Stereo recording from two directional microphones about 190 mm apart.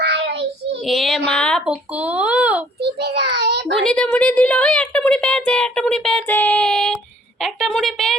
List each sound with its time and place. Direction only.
0.0 s child singing: 60° right (ahead or behind)
0.9 s speech: centre (ahead or behind)
2.8 s child singing: 60° right (ahead or behind)
3.8 s a woman's voice: 5° left (ahead or behind)